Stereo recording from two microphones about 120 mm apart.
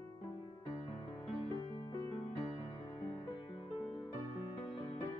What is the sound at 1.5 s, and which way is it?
Music, 40° left (ahead or behind).